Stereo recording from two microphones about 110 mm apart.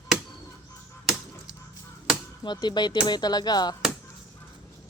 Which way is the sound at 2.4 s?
40° left (ahead or behind).